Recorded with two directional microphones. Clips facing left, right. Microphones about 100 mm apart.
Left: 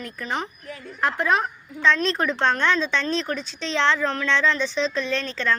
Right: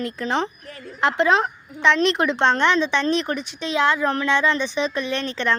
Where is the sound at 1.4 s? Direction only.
20° right (ahead or behind).